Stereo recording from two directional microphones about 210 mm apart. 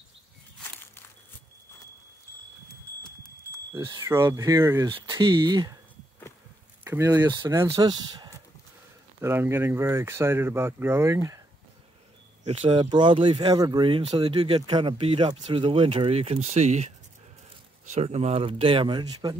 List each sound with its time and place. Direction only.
0.7 s walk: 10° left (ahead or behind)
3.7 s speech: 15° right (ahead or behind)
6.8 s speech: 10° right (ahead or behind)
12.4 s speech: 25° right (ahead or behind)